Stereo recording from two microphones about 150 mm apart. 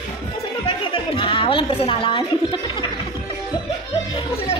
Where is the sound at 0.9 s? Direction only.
35° left (ahead or behind).